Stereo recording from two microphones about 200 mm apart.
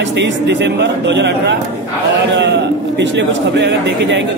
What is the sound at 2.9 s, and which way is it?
Speech, 60° right (ahead or behind).